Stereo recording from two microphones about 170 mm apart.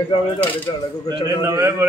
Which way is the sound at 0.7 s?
25° left (ahead or behind).